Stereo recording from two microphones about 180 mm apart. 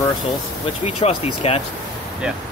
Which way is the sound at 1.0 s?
35° left (ahead or behind).